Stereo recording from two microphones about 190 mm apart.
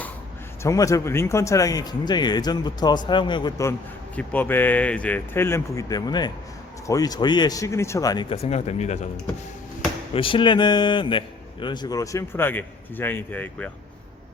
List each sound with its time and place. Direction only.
0.6 s a man's voice: 15° left (ahead or behind); by 9.0 s 35° left (ahead or behind)
10.2 s a man's voice: 25° left (ahead or behind); by 13.7 s 10° left (ahead or behind)